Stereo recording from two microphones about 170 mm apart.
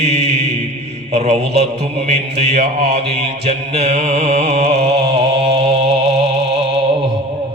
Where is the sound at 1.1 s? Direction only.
40° right (ahead or behind).